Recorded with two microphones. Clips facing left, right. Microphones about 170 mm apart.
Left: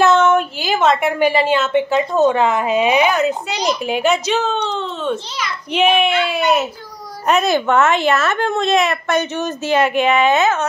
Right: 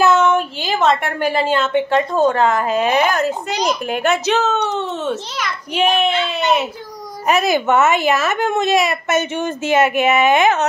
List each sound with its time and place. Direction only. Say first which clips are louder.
0.0 s a woman's voice: left 1 dB; centre (ahead or behind)
3.9 s speech: left 1 dB; 65° right (ahead or behind)
5.8 s a woman's voice: left 2 dB; 5° left (ahead or behind)
7.2 s a woman's voice: even; 5° right (ahead or behind)
9.3 s speech: right 1 dB; 55° right (ahead or behind)
9.8 s speech: even; 5° right (ahead or behind)